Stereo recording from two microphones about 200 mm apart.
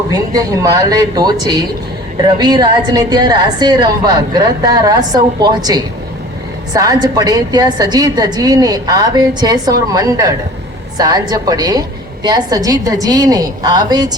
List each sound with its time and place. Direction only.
0.1 s a woman's voice: 15° right (ahead or behind)